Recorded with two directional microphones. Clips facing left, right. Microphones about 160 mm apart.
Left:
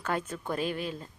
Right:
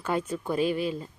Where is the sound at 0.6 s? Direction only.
45° left (ahead or behind).